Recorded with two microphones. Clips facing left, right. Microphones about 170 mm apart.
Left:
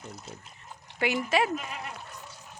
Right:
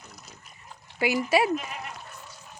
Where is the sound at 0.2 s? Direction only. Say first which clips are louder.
Left 5 dB; 25° left (ahead or behind).